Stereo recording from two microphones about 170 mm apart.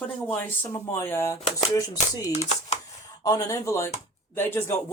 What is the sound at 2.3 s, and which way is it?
Speech, 40° left (ahead or behind).